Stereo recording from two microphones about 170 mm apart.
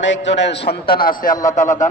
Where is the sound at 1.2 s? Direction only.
50° left (ahead or behind).